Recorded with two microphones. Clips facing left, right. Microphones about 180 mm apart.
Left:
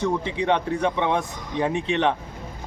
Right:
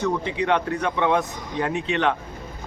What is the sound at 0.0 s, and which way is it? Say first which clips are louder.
Speech: even; 25° left (ahead or behind).